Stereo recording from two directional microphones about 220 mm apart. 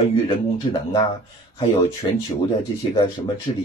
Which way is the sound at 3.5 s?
20° left (ahead or behind).